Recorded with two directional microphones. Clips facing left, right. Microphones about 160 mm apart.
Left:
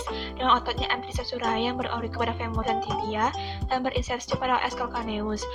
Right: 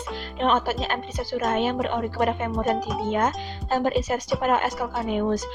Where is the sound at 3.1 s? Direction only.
50° right (ahead or behind).